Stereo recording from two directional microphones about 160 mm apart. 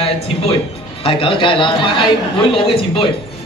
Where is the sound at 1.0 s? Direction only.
35° left (ahead or behind).